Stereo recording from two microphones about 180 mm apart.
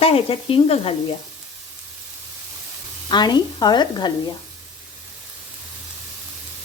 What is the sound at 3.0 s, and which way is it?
Speech, 25° left (ahead or behind).